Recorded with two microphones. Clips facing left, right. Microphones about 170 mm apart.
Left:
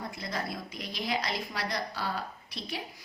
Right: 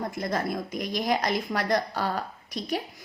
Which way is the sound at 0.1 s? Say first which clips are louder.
Right 7 dB; 50° right (ahead or behind).